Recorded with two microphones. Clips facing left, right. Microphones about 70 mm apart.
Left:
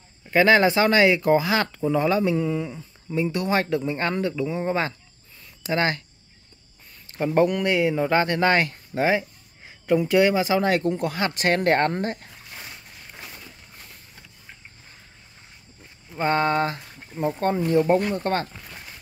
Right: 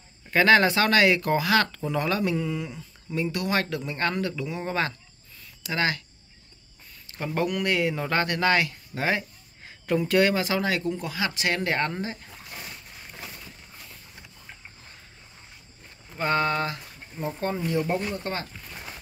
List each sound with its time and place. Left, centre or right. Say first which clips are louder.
0.3 s speech: left 2 dB; centre
5.6 s speech: left 3 dB; left
7.2 s speech: left 7 dB; left
8.9 s speech: left 5 dB; left
10.6 s speech: left 5 dB; left
16.2 s speech: left 3 dB; left
17.3 s speech: left 6 dB; left